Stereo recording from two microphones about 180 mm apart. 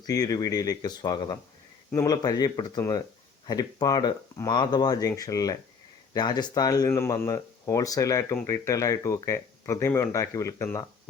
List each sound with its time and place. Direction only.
0.0 s speech: 20° left (ahead or behind)